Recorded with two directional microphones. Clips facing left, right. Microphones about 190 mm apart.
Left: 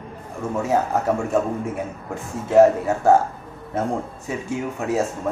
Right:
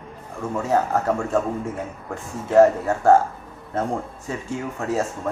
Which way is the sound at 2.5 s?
10° left (ahead or behind).